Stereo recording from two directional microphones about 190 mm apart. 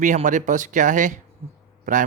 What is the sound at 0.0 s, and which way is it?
Speech, 40° right (ahead or behind).